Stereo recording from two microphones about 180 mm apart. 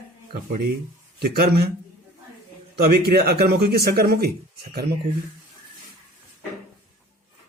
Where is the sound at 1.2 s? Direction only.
60° right (ahead or behind).